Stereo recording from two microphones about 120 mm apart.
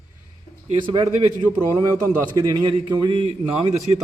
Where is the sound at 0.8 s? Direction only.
45° right (ahead or behind).